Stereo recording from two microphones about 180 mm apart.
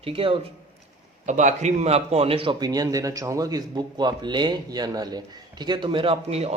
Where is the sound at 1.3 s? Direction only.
40° right (ahead or behind).